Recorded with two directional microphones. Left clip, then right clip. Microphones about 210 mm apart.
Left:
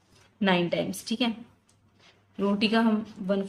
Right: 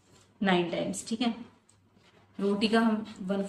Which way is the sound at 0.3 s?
55° left (ahead or behind).